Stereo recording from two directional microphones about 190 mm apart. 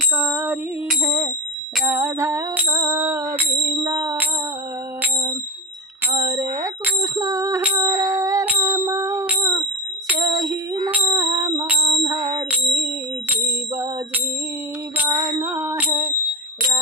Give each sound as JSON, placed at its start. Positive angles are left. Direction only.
{"t": 0.2, "sound": "music", "side_deg": -10}
{"t": 6.1, "sound": "bicycle bell", "side_deg": -20}
{"t": 7.8, "sound": "music", "side_deg": -20}
{"t": 8.7, "sound": "ding", "side_deg": -15}
{"t": 10.2, "sound": "a sound", "side_deg": -20}
{"t": 10.8, "sound": "music", "side_deg": -15}
{"t": 12.5, "sound": "music", "side_deg": -10}
{"t": 15.4, "sound": "music", "side_deg": -15}